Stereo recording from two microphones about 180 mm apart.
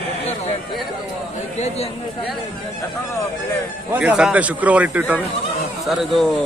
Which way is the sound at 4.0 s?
5° right (ahead or behind).